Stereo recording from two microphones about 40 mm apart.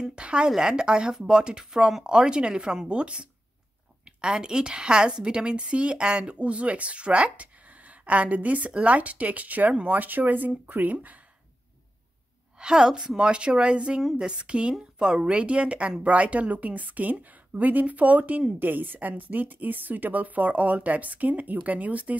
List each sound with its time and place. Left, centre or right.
0.0 s a sound: right
0.5 s a woman's voice: centre
2.9 s a woman's voice: right
12.5 s a woman's voice: centre; by 22.2 s right